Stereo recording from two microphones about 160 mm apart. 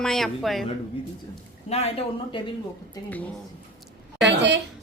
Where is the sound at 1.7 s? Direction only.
40° left (ahead or behind).